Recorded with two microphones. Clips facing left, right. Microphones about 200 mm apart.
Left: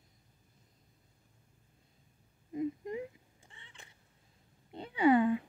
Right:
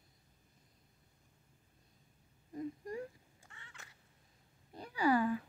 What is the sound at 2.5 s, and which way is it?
Whimper, 20° left (ahead or behind).